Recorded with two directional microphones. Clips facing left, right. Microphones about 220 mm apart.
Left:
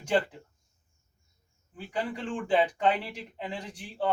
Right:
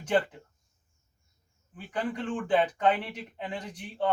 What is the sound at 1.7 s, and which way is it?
A man's voice, 10° left (ahead or behind).